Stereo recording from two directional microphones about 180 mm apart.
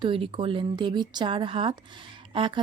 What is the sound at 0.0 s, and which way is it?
A woman's voice, 30° right (ahead or behind).